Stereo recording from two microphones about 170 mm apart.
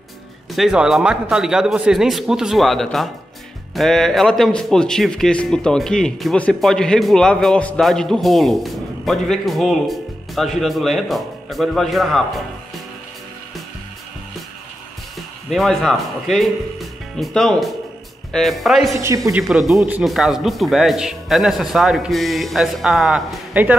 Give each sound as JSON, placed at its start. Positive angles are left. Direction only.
{"t": 0.5, "sound": "a man's voice", "side_deg": 0}
{"t": 15.5, "sound": "a man's voice", "side_deg": 0}
{"t": 18.9, "sound": "speech", "side_deg": -20}
{"t": 19.4, "sound": "a man's voice", "side_deg": 0}